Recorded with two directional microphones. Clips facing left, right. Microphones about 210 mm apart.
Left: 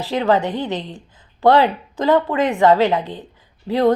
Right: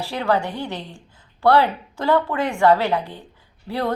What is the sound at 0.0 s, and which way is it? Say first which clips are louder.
A woman's voice: left 4 dB; 20° left (ahead or behind).